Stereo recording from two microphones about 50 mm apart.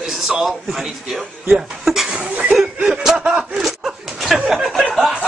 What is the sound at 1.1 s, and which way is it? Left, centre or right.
Speech, right.